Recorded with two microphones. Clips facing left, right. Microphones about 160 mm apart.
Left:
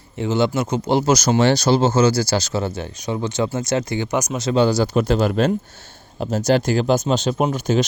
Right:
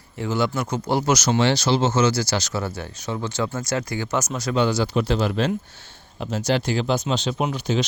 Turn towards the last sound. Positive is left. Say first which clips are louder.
# left 4 dB
turn(degrees=45)  # may be behind; listen again after turning